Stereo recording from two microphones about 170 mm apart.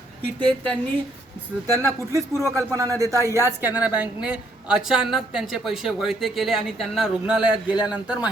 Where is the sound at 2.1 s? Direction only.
Centre (ahead or behind).